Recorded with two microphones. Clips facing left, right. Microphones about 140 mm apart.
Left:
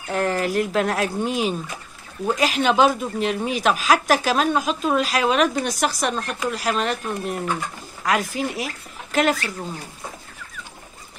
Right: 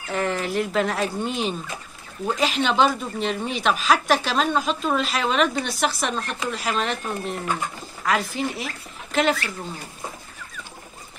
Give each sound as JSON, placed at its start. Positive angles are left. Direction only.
{"t": 0.1, "sound": "speech", "side_deg": 0}
{"t": 5.6, "sound": "a woman's voice", "side_deg": 40}
{"t": 5.9, "sound": "speech", "side_deg": 0}